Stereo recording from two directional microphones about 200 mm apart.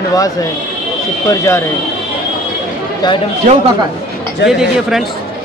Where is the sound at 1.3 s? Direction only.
15° left (ahead or behind).